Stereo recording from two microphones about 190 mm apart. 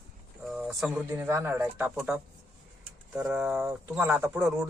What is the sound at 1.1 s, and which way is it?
Speech, 15° right (ahead or behind).